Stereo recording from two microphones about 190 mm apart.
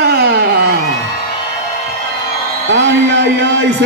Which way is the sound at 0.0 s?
60° right (ahead or behind).